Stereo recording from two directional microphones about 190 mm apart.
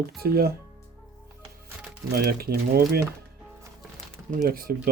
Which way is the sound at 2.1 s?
55° right (ahead or behind).